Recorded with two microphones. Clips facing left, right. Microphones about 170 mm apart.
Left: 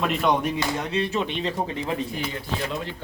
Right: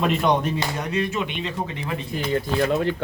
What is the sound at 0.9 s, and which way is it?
Speech, 30° left (ahead or behind).